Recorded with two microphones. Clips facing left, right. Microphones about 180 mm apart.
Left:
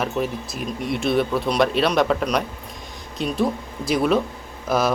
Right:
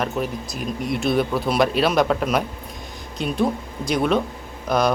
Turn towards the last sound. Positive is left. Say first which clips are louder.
# right 1 dB
turn(degrees=5)  # may be behind; listen again after turning